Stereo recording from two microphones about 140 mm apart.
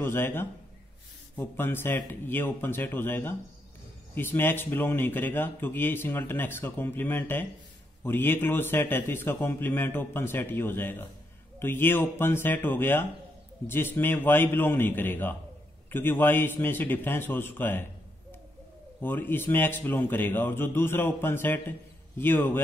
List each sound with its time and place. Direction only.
0.0 s speech: 15° left (ahead or behind)
18.9 s speech: 15° left (ahead or behind)